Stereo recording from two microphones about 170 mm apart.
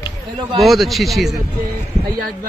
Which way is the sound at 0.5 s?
Centre (ahead or behind).